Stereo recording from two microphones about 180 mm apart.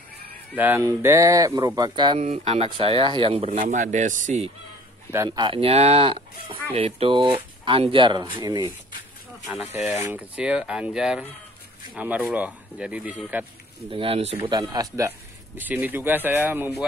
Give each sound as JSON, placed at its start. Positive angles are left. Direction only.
{"t": 0.6, "sound": "speech", "side_deg": -10}
{"t": 5.1, "sound": "speech", "side_deg": -20}
{"t": 10.0, "sound": "speech", "side_deg": -5}
{"t": 13.8, "sound": "speech", "side_deg": -30}